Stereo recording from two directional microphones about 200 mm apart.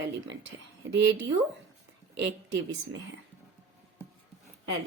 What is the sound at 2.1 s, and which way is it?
Speech, 60° right (ahead or behind).